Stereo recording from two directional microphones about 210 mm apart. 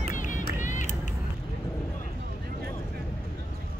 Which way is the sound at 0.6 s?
35° left (ahead or behind).